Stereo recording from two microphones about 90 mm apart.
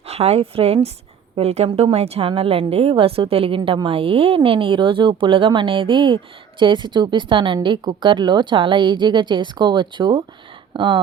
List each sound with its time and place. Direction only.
0.3 s a woman's voice: 90° right; by 11.0 s 65° right (ahead or behind)